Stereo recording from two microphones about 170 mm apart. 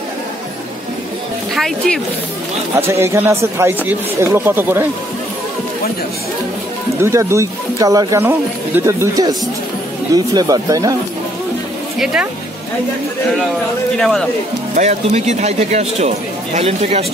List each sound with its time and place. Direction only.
1.5 s speech: centre (ahead or behind)
2.8 s speech: 15° right (ahead or behind)
7.0 s speech: 15° right (ahead or behind)
12.0 s speech: 5° right (ahead or behind)
13.9 s speech: centre (ahead or behind)
14.8 s speech: 40° right (ahead or behind)